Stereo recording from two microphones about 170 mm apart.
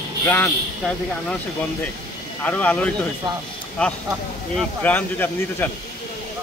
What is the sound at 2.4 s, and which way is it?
Speech, 10° left (ahead or behind).